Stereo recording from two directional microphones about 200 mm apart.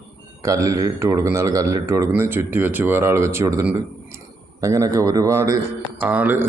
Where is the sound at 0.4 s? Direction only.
15° right (ahead or behind).